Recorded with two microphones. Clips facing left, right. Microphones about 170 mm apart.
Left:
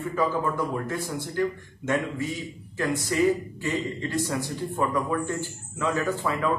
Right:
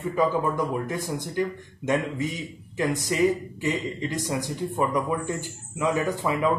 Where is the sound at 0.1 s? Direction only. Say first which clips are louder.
Right 3 dB; 15° right (ahead or behind).